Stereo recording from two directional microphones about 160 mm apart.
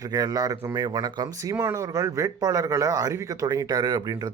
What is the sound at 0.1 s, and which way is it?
Speech, 25° right (ahead or behind).